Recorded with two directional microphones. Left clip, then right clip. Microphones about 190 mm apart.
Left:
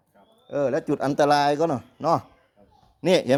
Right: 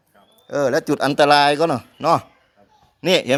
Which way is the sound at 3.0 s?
10° left (ahead or behind).